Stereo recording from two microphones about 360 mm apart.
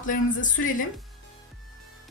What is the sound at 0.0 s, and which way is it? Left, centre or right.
Speech, left.